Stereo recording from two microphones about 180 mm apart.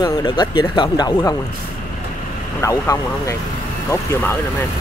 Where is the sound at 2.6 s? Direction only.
20° left (ahead or behind).